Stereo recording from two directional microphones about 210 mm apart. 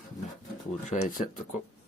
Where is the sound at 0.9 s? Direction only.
40° left (ahead or behind).